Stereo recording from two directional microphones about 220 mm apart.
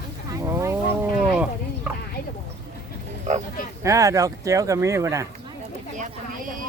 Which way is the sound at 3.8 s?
15° right (ahead or behind).